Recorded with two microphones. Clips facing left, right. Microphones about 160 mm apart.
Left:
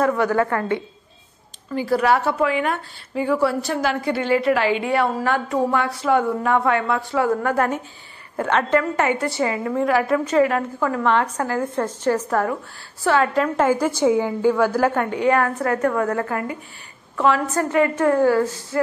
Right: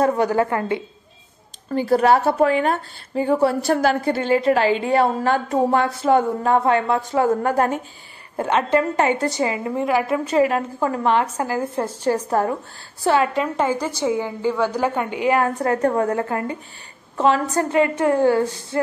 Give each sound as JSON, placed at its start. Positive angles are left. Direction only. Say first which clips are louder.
{"t": 0.0, "sound": "a woman's voice", "louder": "right 1 dB", "side_deg": -30}
{"t": 1.7, "sound": "a woman's voice", "louder": "right 3 dB", "side_deg": -40}
{"t": 7.0, "sound": "a woman's voice", "louder": "right 2 dB", "side_deg": -45}
{"t": 7.2, "sound": "a woman's voice", "louder": "right 1 dB", "side_deg": -30}
{"t": 8.4, "sound": "a woman's voice", "louder": "right 1 dB", "side_deg": -20}
{"t": 11.5, "sound": "a woman's voice", "louder": "left 1 dB", "side_deg": -30}
{"t": 13.0, "sound": "a woman's voice", "louder": "right 1 dB", "side_deg": -20}
{"t": 13.3, "sound": "a woman's voice", "louder": "left 2 dB", "side_deg": 0}
{"t": 13.7, "sound": "a woman's voice", "louder": "left 4 dB", "side_deg": -10}
{"t": 13.9, "sound": "a woman's voice", "louder": "left 4 dB", "side_deg": 15}
{"t": 15.2, "sound": "a woman's voice", "louder": "right 1 dB", "side_deg": -25}